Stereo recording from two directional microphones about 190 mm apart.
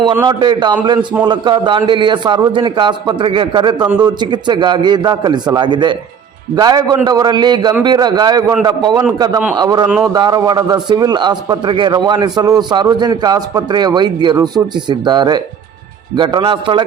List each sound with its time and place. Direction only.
0.3 s a man's voice: 25° right (ahead or behind)